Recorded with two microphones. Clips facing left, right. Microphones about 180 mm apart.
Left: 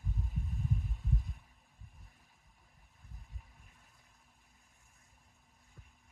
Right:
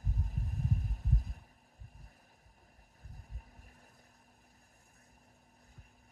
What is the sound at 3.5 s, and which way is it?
Vehicle, 40° right (ahead or behind).